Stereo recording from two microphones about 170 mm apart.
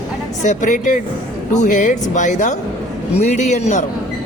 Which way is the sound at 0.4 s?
50° left (ahead or behind).